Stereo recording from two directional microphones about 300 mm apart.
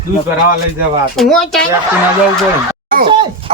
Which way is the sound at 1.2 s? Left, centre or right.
Centre.